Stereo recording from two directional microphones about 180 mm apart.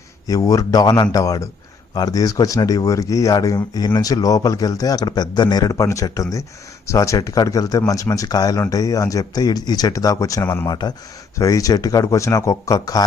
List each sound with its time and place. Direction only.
0.3 s speech: 20° left (ahead or behind)
10.7 s speech: 25° left (ahead or behind)